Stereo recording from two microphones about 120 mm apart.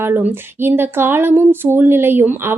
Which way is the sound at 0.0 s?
15° right (ahead or behind).